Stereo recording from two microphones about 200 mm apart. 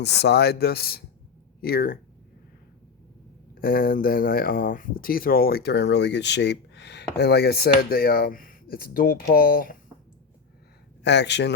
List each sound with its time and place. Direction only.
0.0 s speech: 55° left (ahead or behind)
3.5 s speech: 45° left (ahead or behind)
11.0 s speech: 60° left (ahead or behind)